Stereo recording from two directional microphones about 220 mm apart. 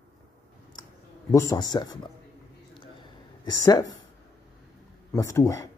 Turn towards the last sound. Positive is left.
turn(degrees=15)  # may be behind; listen again after turning